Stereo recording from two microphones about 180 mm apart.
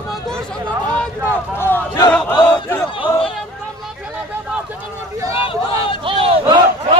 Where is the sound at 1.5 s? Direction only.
10° left (ahead or behind).